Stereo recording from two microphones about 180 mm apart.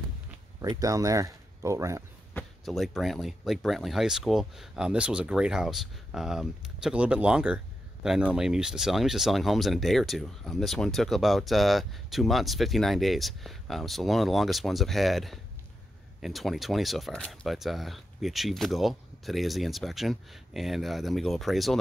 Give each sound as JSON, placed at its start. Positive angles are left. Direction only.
{"t": 0.6, "sound": "speech", "side_deg": -20}
{"t": 2.3, "sound": "speech", "side_deg": 0}